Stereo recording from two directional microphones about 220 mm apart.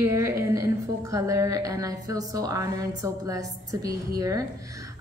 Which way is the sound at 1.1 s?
15° right (ahead or behind).